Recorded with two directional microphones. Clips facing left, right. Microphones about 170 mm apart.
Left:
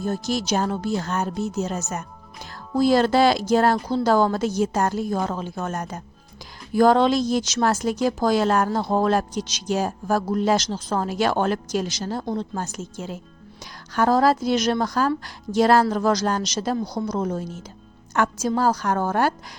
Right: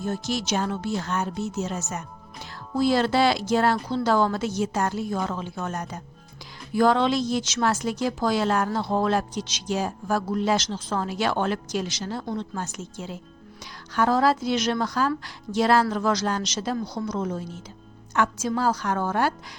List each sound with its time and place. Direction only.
0.0 s speech: 40° left (ahead or behind)